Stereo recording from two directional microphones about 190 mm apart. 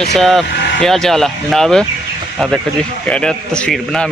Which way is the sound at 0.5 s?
60° left (ahead or behind).